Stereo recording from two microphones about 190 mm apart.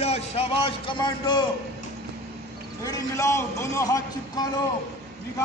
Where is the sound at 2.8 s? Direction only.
20° left (ahead or behind).